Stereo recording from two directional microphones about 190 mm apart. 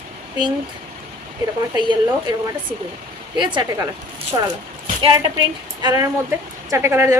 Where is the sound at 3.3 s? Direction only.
25° right (ahead or behind).